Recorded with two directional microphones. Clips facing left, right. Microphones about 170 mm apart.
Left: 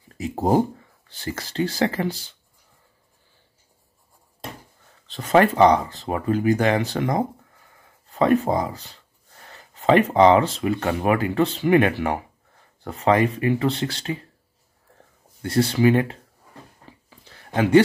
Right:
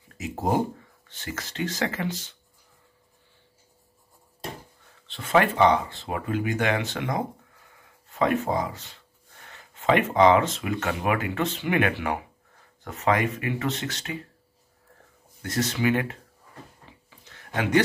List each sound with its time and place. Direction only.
0.2 s speech: 35° left (ahead or behind)
5.0 s speech: 40° left (ahead or behind)
15.4 s speech: 30° left (ahead or behind)
16.9 s a sound: 40° left (ahead or behind)